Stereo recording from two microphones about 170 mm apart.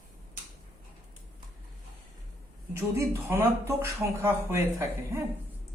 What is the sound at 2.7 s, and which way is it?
Speech, 15° right (ahead or behind).